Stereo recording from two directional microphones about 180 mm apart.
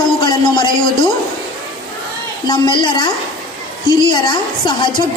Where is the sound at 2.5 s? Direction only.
25° left (ahead or behind).